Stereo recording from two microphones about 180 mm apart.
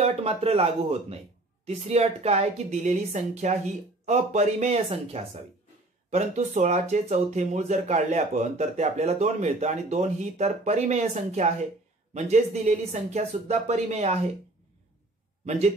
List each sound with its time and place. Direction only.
0.0 s speech: 35° right (ahead or behind)